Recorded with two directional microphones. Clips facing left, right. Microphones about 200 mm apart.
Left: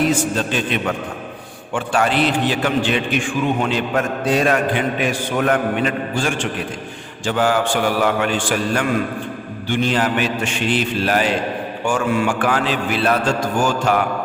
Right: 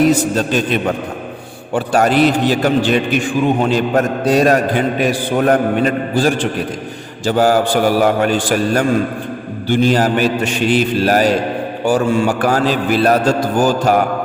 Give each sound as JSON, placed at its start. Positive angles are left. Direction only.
{"t": 0.0, "sound": "a man's voice", "side_deg": -40}